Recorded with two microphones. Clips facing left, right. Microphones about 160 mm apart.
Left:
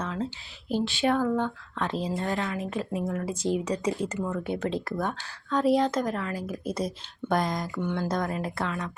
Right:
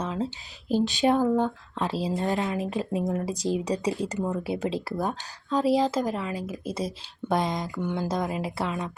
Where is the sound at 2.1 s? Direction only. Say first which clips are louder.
Right 3 dB; 15° right (ahead or behind).